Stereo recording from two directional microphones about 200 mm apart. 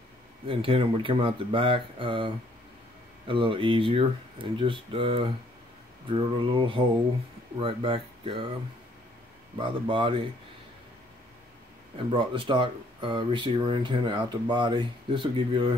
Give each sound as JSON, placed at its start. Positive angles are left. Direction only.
{"t": 0.5, "sound": "speech", "side_deg": -25}
{"t": 9.6, "sound": "speech", "side_deg": -25}
{"t": 12.1, "sound": "speech", "side_deg": -25}